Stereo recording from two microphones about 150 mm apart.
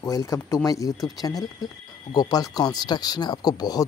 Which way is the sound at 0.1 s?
20° left (ahead or behind).